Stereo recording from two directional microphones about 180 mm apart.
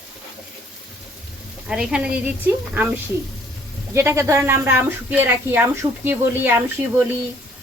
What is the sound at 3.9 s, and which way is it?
A woman's voice, 15° right (ahead or behind).